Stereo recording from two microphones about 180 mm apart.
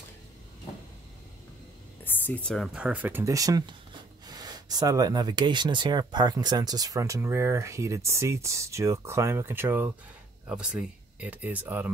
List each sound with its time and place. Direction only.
2.0 s speech: 10° left (ahead or behind); by 11.9 s 10° right (ahead or behind)